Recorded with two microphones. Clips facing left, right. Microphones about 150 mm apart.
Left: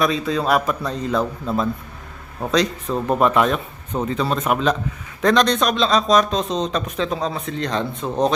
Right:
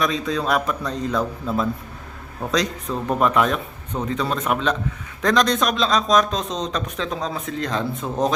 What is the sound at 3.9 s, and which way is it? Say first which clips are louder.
Speech: left 2 dB; 15° left (ahead or behind).